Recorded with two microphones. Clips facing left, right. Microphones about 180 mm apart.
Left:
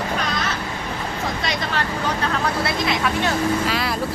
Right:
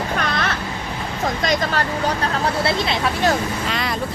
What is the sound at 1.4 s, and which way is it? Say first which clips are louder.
Vehicle: right 6 dB; 40° right (ahead or behind).